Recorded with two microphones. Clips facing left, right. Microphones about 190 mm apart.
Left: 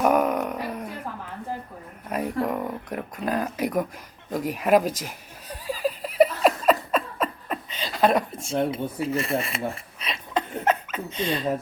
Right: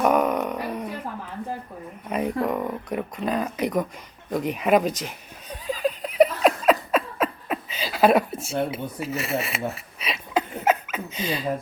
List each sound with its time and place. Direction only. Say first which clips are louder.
0.0 s a sound: even; 5° left (ahead or behind)
2.0 s speech: right 1 dB; centre (ahead or behind)
5.0 s laughter: right 2 dB; 5° left (ahead or behind)